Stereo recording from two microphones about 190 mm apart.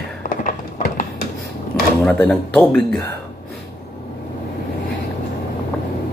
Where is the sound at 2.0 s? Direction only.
5° left (ahead or behind).